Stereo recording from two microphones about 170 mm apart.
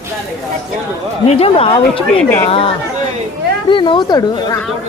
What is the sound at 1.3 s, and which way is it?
Speech, 35° left (ahead or behind).